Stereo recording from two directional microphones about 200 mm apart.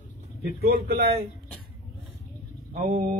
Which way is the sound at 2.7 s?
40° right (ahead or behind).